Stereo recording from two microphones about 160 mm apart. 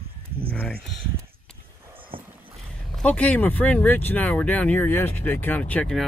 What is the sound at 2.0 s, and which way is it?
Vehicle, 35° right (ahead or behind).